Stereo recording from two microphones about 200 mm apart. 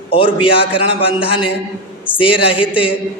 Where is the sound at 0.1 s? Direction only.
25° left (ahead or behind).